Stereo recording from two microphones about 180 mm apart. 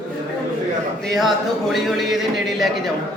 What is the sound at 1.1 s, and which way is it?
Speech, centre (ahead or behind).